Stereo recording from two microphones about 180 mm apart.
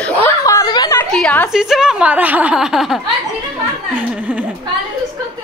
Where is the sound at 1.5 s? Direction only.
5° right (ahead or behind).